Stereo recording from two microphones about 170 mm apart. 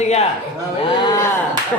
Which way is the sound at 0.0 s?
40° left (ahead or behind).